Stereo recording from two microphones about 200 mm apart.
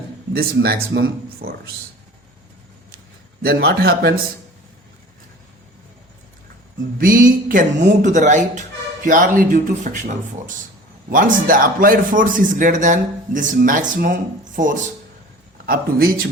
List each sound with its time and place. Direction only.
0.3 s speech: 50° right (ahead or behind)
3.4 s a man's voice: 55° right (ahead or behind)
7.0 s a man's voice: 45° right (ahead or behind)